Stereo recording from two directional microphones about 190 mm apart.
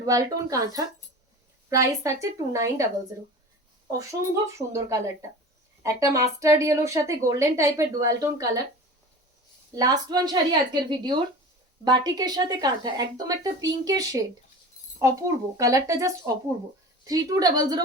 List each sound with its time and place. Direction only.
0.0 s a woman's voice: 20° right (ahead or behind)
4.5 s speech: 15° right (ahead or behind)
9.7 s a woman's voice: 20° right (ahead or behind)